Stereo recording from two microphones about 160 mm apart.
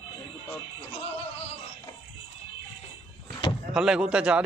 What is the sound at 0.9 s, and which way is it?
Music, 40° left (ahead or behind).